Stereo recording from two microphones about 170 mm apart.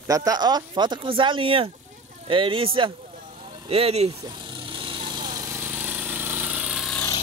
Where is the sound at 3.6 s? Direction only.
35° right (ahead or behind).